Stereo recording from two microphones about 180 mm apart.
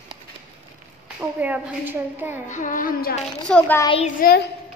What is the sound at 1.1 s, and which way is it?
A woman's voice, 10° right (ahead or behind).